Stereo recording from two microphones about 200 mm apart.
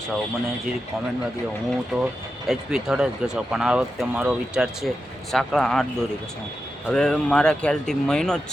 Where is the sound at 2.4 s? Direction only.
5° right (ahead or behind).